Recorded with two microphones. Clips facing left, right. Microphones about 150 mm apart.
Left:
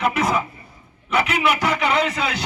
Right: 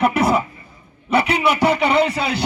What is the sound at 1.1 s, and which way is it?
A man's voice, 30° right (ahead or behind).